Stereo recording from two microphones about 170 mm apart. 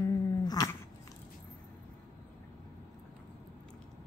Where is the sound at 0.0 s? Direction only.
20° left (ahead or behind).